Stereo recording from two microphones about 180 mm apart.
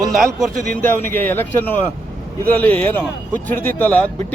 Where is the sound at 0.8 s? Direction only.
10° left (ahead or behind).